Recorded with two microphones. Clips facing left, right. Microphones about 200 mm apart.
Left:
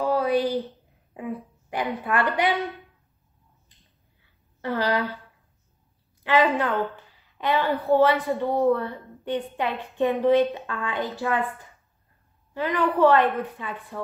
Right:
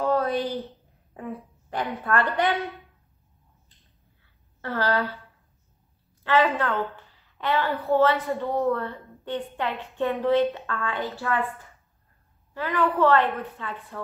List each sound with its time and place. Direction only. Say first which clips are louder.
0.1 s a sound: left 2 dB; 10° left (ahead or behind)
1.7 s a woman's voice: even; 15° left (ahead or behind)
4.6 s speech: left 1 dB; 15° left (ahead or behind)
6.2 s a woman's voice: left 1 dB; 15° left (ahead or behind)
12.5 s a woman's voice: left 1 dB; 20° left (ahead or behind)